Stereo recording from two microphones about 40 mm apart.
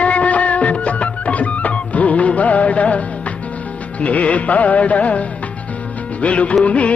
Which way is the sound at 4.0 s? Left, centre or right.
Left.